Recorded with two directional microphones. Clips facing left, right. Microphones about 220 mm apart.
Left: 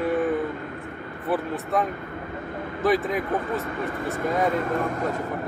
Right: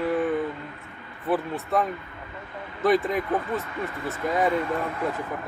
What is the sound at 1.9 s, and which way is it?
Vehicle, 50° left (ahead or behind).